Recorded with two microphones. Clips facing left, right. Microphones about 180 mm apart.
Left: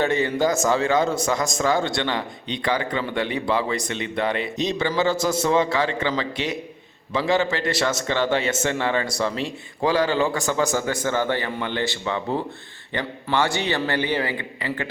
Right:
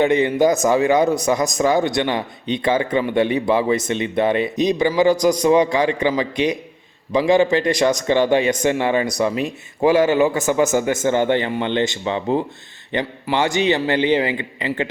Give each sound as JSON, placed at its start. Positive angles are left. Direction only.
{"t": 0.0, "sound": "a man's voice", "side_deg": -15}